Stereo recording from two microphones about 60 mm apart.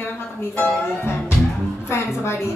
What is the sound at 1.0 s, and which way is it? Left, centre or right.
Music, left.